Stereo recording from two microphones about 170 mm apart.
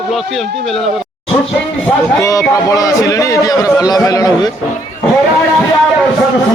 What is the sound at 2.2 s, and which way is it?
A man's voice, 20° left (ahead or behind).